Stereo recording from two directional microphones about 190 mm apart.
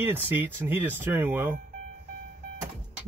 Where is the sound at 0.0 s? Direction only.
10° right (ahead or behind).